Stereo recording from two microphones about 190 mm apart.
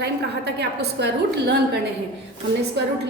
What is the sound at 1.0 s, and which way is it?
Speech, 65° right (ahead or behind).